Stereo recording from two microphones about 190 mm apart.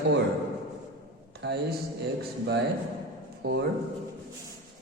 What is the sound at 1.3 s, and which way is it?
Speech, 60° right (ahead or behind).